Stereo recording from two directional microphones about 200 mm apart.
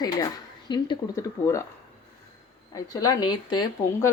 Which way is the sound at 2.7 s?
20° left (ahead or behind).